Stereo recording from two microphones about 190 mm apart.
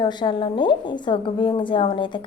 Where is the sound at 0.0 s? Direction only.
25° left (ahead or behind).